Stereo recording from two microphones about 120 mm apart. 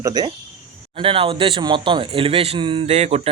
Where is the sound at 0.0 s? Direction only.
35° right (ahead or behind).